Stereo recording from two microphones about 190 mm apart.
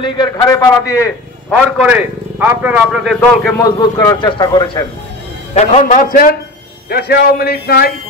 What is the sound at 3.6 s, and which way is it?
A man's voice, 15° left (ahead or behind).